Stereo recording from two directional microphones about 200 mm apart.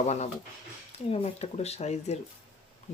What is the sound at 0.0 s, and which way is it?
Speech, 35° left (ahead or behind).